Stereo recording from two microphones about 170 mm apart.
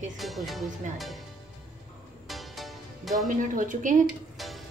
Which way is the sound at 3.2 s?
50° right (ahead or behind).